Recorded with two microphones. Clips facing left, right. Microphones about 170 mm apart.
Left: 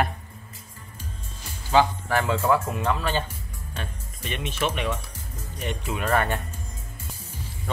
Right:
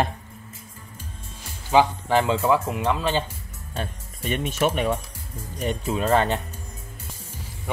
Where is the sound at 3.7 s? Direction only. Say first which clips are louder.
Right 5 dB; 45° right (ahead or behind); by 6.4 s 20° right (ahead or behind).